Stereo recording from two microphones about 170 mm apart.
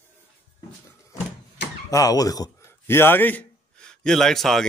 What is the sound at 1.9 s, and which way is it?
A man's voice, 20° left (ahead or behind).